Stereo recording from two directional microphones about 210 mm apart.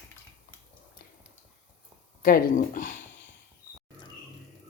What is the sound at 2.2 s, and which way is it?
Speech, 40° left (ahead or behind).